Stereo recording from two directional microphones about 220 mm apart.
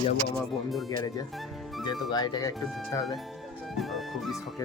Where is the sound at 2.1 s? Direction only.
20° left (ahead or behind).